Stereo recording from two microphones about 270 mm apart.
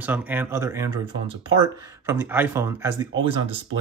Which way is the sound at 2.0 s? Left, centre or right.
Centre.